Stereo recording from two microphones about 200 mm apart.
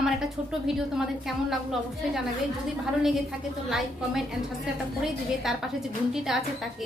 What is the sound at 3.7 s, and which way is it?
A woman's voice, centre (ahead or behind).